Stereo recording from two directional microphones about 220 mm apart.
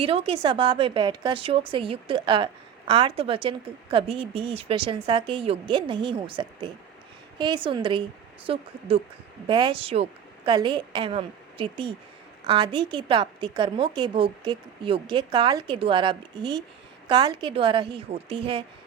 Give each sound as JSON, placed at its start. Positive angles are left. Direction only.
{"t": 0.0, "sound": "a woman's voice", "side_deg": -25}